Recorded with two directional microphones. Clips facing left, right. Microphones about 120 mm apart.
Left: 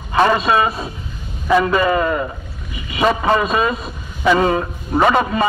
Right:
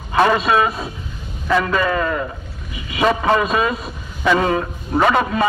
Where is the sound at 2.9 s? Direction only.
5° left (ahead or behind).